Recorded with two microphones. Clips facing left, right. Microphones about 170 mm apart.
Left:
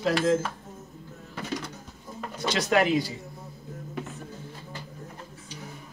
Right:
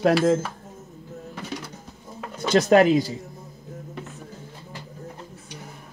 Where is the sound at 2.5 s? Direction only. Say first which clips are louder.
Right 7 dB; 45° right (ahead or behind).